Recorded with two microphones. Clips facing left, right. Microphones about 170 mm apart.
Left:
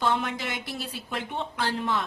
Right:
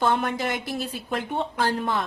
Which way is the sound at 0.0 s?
50° right (ahead or behind).